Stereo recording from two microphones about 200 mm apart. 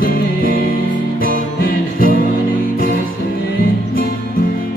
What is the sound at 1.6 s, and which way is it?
Music, 45° left (ahead or behind).